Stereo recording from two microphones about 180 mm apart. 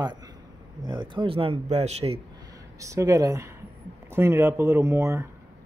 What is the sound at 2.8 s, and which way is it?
Speech, 20° right (ahead or behind).